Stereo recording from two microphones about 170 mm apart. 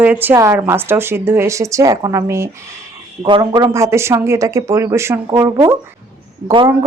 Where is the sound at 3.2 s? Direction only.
30° right (ahead or behind).